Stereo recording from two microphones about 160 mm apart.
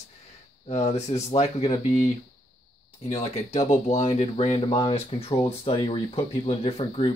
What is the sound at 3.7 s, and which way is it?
Speech, 45° left (ahead or behind).